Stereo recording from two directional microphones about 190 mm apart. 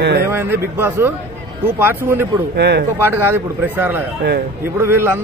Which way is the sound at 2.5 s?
60° right (ahead or behind).